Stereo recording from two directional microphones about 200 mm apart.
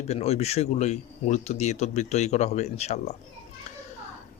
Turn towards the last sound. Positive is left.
turn(degrees=35)  # may be behind; listen again after turning